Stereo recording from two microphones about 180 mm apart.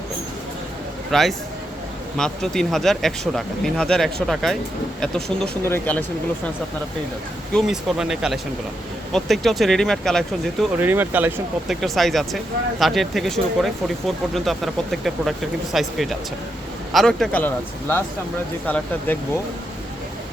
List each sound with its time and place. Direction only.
1.1 s speech: centre (ahead or behind)
7.5 s speech: centre (ahead or behind)
10.8 s speech: 10° right (ahead or behind)
11.8 s speech: centre (ahead or behind)